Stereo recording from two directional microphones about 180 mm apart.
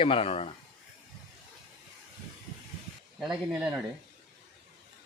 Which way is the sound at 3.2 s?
5° right (ahead or behind).